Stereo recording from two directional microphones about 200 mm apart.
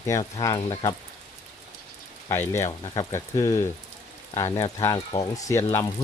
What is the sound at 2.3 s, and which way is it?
Speech, 15° left (ahead or behind).